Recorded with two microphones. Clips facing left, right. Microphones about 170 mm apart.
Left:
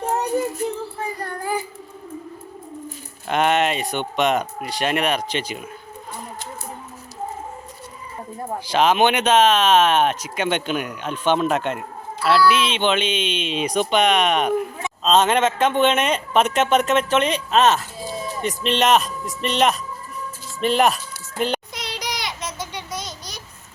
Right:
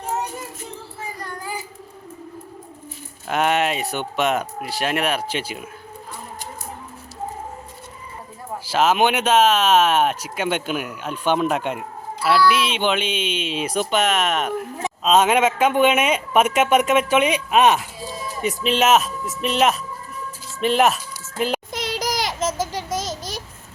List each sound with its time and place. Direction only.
3.2 s speech: 5° right (ahead or behind)
8.6 s speech: 5° right (ahead or behind)
21.7 s child singing: 45° right (ahead or behind)
22.6 s a sound: 45° right (ahead or behind)